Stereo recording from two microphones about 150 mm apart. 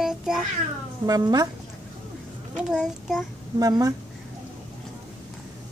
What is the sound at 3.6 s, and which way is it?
Speech, 25° right (ahead or behind).